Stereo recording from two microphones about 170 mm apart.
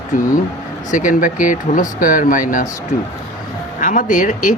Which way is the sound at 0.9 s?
50° left (ahead or behind).